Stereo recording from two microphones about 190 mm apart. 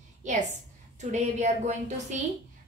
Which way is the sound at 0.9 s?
35° right (ahead or behind).